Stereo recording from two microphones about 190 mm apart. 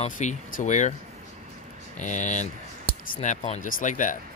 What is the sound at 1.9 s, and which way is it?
Speech, 40° left (ahead or behind).